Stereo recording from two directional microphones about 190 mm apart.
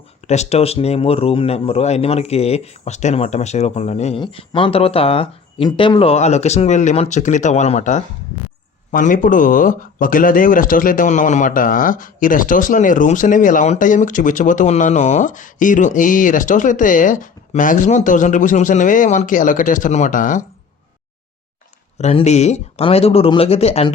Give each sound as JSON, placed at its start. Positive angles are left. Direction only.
{"t": 0.3, "sound": "speech", "side_deg": 35}
{"t": 21.9, "sound": "speech", "side_deg": 35}